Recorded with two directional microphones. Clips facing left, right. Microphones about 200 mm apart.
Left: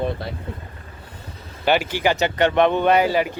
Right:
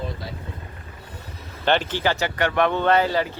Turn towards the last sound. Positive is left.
turn(degrees=15)  # may be behind; listen again after turning